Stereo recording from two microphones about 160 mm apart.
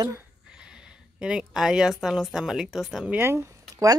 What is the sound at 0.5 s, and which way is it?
A woman's voice, 5° right (ahead or behind).